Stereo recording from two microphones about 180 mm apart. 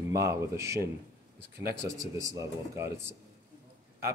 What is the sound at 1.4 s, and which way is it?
Speech, 65° right (ahead or behind).